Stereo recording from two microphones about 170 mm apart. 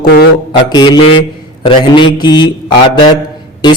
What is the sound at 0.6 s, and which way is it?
A man's voice, 25° left (ahead or behind).